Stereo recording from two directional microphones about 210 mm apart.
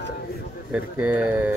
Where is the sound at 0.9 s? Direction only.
5° right (ahead or behind).